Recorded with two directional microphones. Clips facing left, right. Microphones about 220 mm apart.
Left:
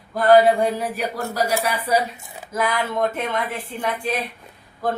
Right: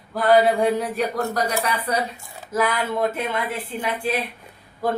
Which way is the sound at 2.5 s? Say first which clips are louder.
Right 1 dB; 5° right (ahead or behind).